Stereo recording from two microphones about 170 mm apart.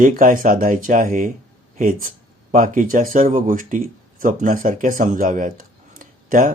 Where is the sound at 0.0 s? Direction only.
50° right (ahead or behind).